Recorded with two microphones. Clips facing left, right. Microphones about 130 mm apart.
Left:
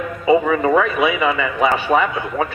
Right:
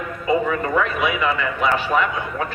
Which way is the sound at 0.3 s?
90° left.